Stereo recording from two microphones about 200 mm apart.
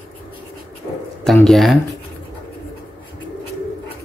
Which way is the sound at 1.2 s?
Centre (ahead or behind).